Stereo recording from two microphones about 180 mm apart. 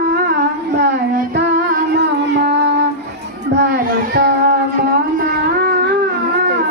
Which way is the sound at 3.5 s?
65° right (ahead or behind).